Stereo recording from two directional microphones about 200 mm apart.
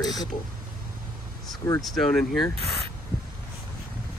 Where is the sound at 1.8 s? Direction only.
Centre (ahead or behind).